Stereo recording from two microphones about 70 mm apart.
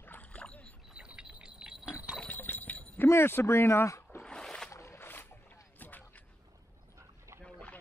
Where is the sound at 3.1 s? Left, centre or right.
Left.